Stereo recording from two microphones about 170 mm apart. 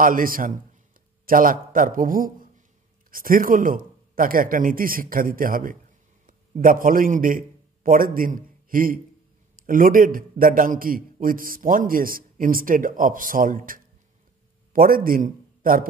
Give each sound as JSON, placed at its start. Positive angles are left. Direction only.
{"t": 0.0, "sound": "a man's voice", "side_deg": -55}